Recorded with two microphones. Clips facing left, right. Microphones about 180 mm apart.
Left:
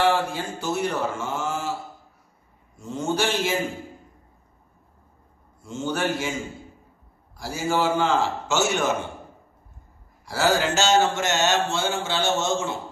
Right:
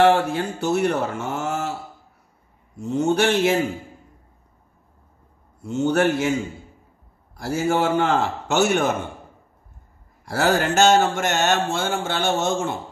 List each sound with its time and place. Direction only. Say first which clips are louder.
0.0 s speech: right 5 dB; 60° right (ahead or behind)
2.8 s speech: right 6 dB; 65° right (ahead or behind)
5.6 s speech: right 7 dB; 65° right (ahead or behind)
7.3 s speech: right 3 dB; 60° right (ahead or behind)
10.2 s speech: right 2 dB; 55° right (ahead or behind)